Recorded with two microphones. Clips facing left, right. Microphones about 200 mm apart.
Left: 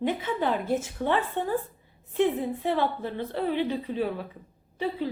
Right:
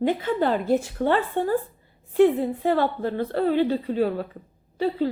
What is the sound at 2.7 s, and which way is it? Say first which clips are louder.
A woman's voice: right 4 dB; 45° right (ahead or behind).